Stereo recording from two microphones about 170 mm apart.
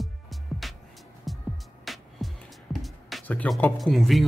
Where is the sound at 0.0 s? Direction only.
Centre (ahead or behind).